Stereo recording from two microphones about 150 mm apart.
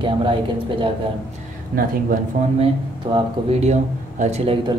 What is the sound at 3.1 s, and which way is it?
Speech, 30° right (ahead or behind).